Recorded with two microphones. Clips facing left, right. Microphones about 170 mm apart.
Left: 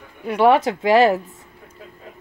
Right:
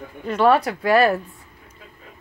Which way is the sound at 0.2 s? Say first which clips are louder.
Left 2 dB; 15° left (ahead or behind).